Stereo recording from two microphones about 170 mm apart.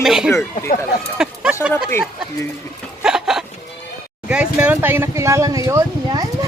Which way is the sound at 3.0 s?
5° right (ahead or behind).